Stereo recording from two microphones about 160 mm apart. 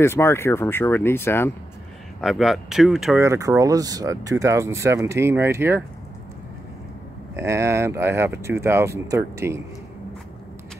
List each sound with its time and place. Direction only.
0.0 s speech: 15° left (ahead or behind)
2.2 s speech: centre (ahead or behind)
3.2 s speech: 20° right (ahead or behind)
7.3 s speech: 15° right (ahead or behind)